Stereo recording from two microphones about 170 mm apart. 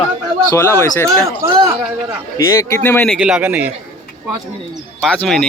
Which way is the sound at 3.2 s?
5° right (ahead or behind).